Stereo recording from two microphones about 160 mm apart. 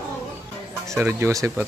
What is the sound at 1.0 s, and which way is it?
Speech, 15° right (ahead or behind).